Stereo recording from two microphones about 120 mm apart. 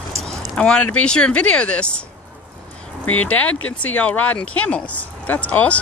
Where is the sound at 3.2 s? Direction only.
10° left (ahead or behind).